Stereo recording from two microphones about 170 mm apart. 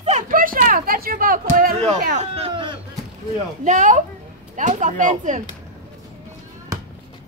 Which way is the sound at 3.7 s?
45° right (ahead or behind).